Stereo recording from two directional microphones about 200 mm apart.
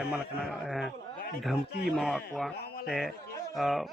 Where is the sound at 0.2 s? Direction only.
50° left (ahead or behind).